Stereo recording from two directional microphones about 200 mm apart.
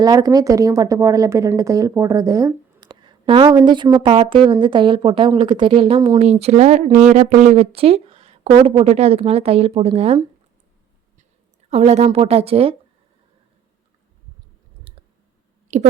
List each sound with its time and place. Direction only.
0.0 s speech: 20° right (ahead or behind)
11.7 s speech: 30° right (ahead or behind)
15.7 s speech: 35° right (ahead or behind)